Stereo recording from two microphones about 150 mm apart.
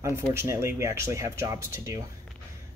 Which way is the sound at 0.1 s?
15° right (ahead or behind).